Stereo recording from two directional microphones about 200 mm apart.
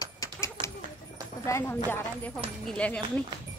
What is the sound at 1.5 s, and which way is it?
Speech, 15° left (ahead or behind).